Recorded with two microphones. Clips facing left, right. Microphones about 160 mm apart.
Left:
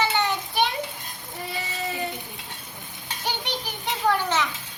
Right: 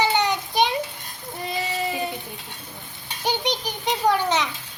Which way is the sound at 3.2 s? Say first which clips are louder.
Right 6 dB; 15° right (ahead or behind).